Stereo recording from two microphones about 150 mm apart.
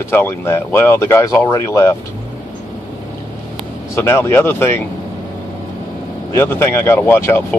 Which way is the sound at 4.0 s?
15° left (ahead or behind).